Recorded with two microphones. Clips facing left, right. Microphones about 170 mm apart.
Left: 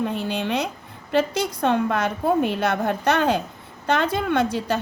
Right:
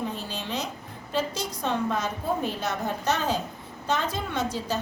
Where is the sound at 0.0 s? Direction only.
65° left (ahead or behind).